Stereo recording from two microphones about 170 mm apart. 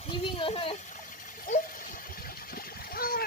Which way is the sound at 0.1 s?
30° left (ahead or behind).